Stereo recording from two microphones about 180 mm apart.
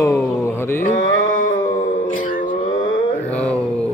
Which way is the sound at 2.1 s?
50° left (ahead or behind).